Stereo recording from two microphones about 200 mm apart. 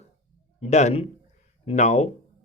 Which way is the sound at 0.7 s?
35° left (ahead or behind).